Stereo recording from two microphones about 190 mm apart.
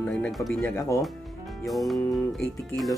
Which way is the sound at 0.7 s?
15° left (ahead or behind).